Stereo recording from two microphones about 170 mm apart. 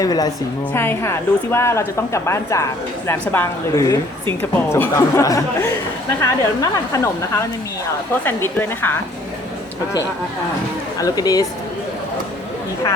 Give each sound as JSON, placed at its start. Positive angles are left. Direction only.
{"t": 0.0, "sound": "a woman's voice", "side_deg": 20}
{"t": 11.0, "sound": "speech", "side_deg": 20}